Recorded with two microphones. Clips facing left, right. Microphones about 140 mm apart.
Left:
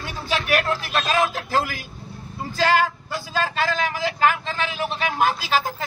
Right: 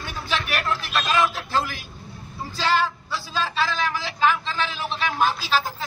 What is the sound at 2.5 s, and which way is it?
Speech, 50° left (ahead or behind).